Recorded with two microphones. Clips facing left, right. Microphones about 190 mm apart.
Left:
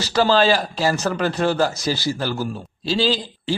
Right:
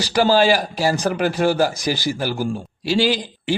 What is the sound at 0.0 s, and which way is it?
A man's voice, 15° right (ahead or behind).